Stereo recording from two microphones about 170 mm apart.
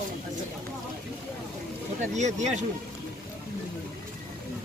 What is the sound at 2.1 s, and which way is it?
Speech, 45° right (ahead or behind).